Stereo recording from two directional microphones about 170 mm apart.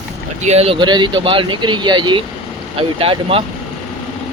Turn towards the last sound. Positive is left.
turn(degrees=-35)  # may be behind; listen again after turning